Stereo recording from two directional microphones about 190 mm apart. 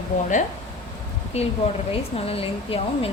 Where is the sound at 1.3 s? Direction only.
35° left (ahead or behind).